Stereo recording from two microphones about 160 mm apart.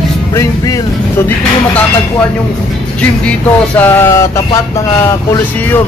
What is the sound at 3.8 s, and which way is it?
Speech, 15° left (ahead or behind).